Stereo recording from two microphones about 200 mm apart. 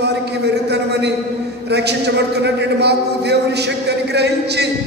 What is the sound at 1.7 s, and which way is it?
A man's voice, 60° right (ahead or behind).